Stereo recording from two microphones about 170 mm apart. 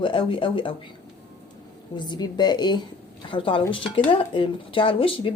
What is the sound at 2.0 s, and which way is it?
A woman's voice, 25° left (ahead or behind).